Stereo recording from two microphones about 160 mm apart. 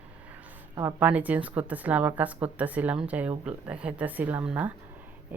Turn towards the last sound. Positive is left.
turn(degrees=-10)  # may be behind; listen again after turning